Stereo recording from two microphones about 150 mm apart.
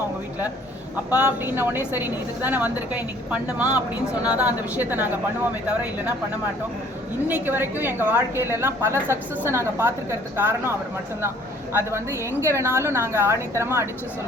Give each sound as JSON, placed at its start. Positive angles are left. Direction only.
{"t": 1.1, "sound": "a woman's voice", "side_deg": -10}
{"t": 7.3, "sound": "a woman's voice", "side_deg": -15}
{"t": 11.9, "sound": "a woman's voice", "side_deg": -20}